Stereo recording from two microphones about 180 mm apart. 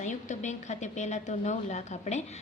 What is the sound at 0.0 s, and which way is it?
A woman's voice, 40° left (ahead or behind).